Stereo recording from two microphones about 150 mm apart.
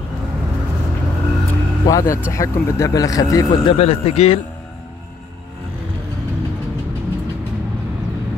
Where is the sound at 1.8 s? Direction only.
25° left (ahead or behind).